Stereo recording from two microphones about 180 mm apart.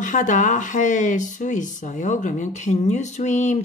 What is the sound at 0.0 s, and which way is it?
A woman's voice, 45° left (ahead or behind).